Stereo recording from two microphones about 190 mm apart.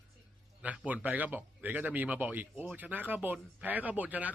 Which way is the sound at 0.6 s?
5° right (ahead or behind).